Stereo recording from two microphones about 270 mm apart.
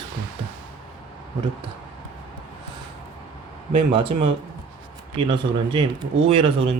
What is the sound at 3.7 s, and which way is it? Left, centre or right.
Speech, centre.